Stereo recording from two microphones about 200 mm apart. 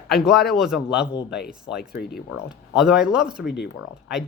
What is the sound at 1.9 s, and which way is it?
Speech, 55° left (ahead or behind).